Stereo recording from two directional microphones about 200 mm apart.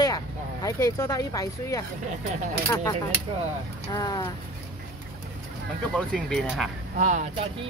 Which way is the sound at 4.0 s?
20° left (ahead or behind).